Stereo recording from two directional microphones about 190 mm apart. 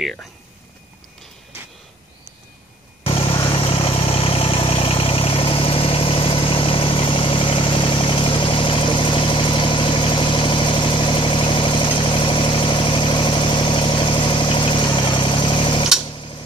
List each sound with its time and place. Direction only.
3.1 s vehicle: 30° left (ahead or behind)